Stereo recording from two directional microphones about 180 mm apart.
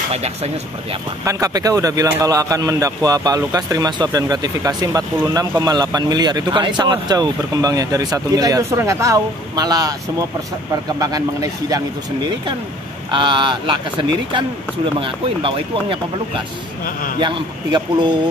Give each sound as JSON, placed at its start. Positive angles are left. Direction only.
{"t": 0.1, "sound": "speech", "side_deg": -35}
{"t": 1.2, "sound": "speech", "side_deg": -20}
{"t": 16.8, "sound": "a man's voice", "side_deg": 50}
{"t": 17.2, "sound": "speech", "side_deg": -25}